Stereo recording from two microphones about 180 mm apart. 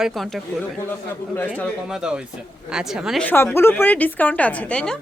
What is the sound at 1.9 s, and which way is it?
A woman's voice, 5° right (ahead or behind).